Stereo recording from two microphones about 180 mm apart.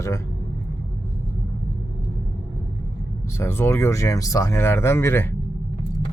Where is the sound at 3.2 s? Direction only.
15° left (ahead or behind).